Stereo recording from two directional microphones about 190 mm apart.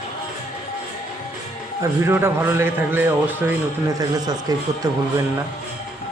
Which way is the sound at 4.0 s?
20° right (ahead or behind).